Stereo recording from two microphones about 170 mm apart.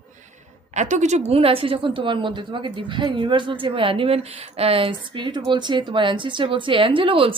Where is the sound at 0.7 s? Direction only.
45° right (ahead or behind).